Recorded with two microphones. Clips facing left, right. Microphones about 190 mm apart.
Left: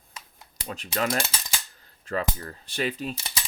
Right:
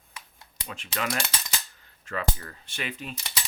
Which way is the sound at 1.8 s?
35° left (ahead or behind).